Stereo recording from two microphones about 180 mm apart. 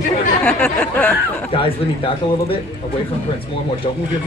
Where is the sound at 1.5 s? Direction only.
30° left (ahead or behind).